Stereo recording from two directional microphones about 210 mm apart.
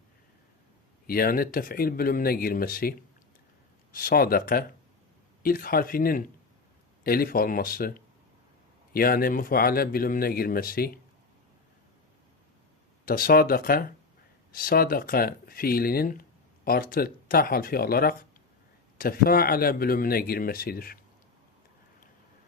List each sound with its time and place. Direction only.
1.0 s speech: 45° left (ahead or behind)
3.9 s speech: 45° left (ahead or behind)
13.1 s speech: 45° left (ahead or behind)